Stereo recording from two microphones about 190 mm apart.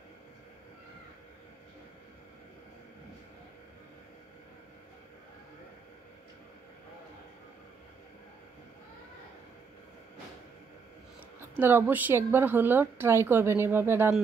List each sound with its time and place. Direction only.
11.5 s a woman's voice: 10° right (ahead or behind)